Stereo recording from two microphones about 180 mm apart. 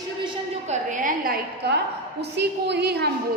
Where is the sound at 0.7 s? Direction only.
45° right (ahead or behind).